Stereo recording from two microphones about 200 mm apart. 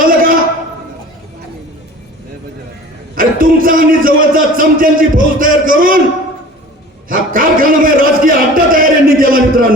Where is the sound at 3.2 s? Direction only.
45° right (ahead or behind).